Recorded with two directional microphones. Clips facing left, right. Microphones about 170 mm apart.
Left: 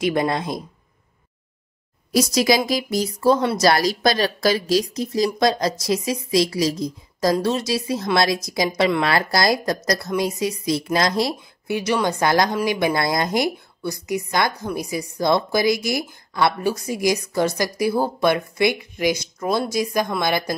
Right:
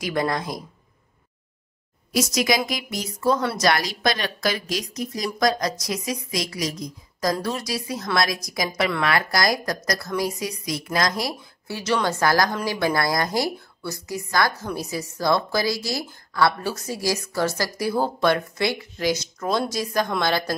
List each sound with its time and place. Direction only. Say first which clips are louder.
0.0 s a woman's voice: left 4 dB; 25° left (ahead or behind)
2.1 s a woman's voice: left 4 dB; 30° left (ahead or behind); by 20.5 s 15° left (ahead or behind)